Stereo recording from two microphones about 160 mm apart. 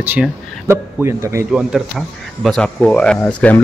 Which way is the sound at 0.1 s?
15° right (ahead or behind).